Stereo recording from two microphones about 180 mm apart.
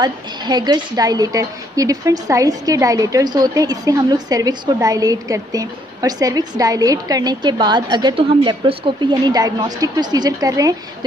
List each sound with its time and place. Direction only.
0.0 s a woman's voice: 25° right (ahead or behind)